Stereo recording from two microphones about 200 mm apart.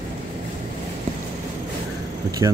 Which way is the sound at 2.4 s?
15° right (ahead or behind).